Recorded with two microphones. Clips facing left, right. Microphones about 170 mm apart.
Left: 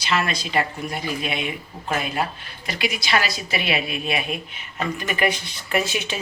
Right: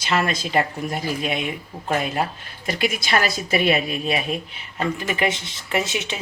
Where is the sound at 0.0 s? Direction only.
50° right (ahead or behind).